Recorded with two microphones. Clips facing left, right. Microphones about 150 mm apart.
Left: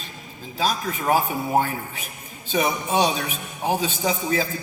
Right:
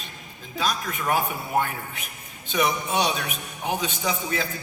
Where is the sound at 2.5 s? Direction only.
35° left (ahead or behind).